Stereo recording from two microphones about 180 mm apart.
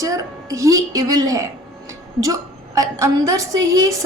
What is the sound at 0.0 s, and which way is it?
A woman's voice, 20° right (ahead or behind).